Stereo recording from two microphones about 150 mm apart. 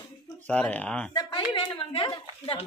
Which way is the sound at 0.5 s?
10° left (ahead or behind).